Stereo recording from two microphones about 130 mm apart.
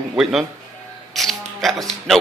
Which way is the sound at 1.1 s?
Centre (ahead or behind).